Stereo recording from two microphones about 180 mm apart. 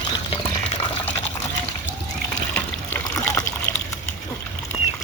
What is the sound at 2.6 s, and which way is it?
Water, 15° left (ahead or behind).